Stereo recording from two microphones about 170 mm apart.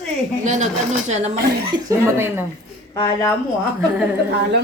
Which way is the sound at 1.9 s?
15° right (ahead or behind).